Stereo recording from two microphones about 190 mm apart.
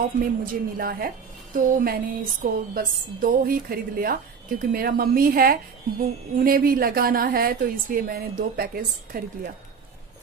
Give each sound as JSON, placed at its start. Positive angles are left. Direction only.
{"t": 0.2, "sound": "a woman's voice", "side_deg": -50}